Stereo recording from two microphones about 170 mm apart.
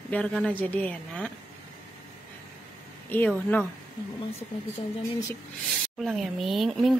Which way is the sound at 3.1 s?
10° left (ahead or behind).